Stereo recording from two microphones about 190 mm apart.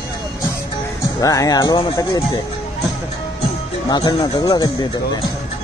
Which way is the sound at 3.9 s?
20° left (ahead or behind).